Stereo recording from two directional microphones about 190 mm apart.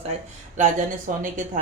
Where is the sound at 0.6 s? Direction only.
45° right (ahead or behind).